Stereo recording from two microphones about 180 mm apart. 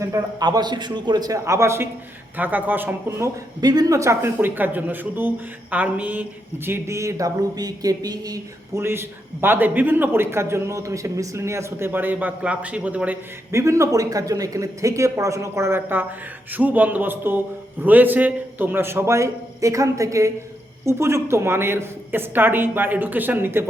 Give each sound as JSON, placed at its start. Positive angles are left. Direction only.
{"t": 0.0, "sound": "a man's voice", "side_deg": -20}
{"t": 3.6, "sound": "speech", "side_deg": -25}